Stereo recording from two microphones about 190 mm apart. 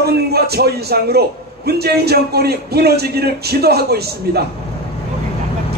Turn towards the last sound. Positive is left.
turn(degrees=-55)  # may be behind; listen again after turning